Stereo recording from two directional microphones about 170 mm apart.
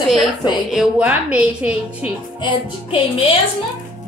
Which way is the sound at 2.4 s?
30° left (ahead or behind).